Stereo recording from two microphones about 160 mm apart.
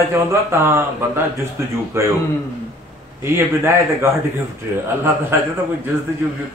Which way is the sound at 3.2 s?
15° right (ahead or behind).